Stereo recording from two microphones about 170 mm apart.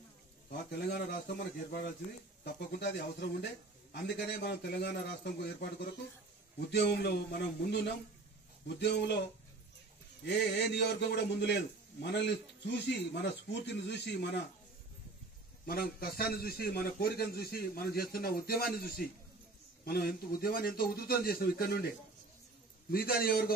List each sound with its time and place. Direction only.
0.5 s a man's voice: 70° left (ahead or behind)
2.4 s a man's voice: 80° left
6.7 s a man's voice: 80° left
10.2 s a man's voice: 85° left
15.6 s a man's voice: 60° left (ahead or behind)